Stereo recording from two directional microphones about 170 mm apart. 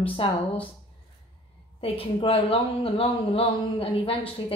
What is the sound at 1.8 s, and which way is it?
A woman's voice, 35° left (ahead or behind).